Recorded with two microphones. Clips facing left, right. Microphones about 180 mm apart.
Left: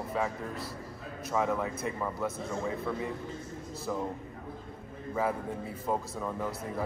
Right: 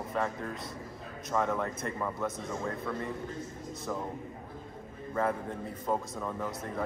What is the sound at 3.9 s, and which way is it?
Speech, 5° left (ahead or behind).